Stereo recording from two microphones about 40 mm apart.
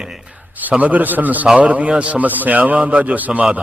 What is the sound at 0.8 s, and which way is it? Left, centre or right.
A man's voice, right.